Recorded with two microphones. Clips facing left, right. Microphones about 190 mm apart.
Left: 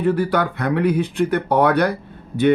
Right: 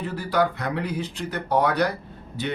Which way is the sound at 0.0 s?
55° left (ahead or behind).